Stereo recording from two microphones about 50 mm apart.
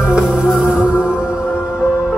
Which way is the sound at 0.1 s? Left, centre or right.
Centre.